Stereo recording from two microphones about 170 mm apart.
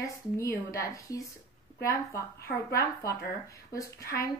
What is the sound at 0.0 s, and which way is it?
Speech, 20° left (ahead or behind).